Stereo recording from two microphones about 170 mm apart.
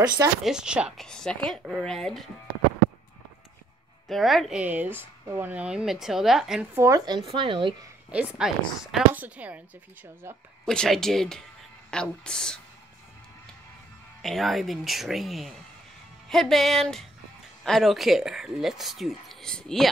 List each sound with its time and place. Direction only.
0.4 s a woman's voice: 5° right (ahead or behind)
4.1 s a woman's voice: centre (ahead or behind)
6.7 s speech: 15° right (ahead or behind)
7.2 s speech: 30° right (ahead or behind)
8.4 s a woman's voice: 5° right (ahead or behind)
10.6 s a woman's voice: 5° left (ahead or behind)
14.2 s a woman's voice: centre (ahead or behind)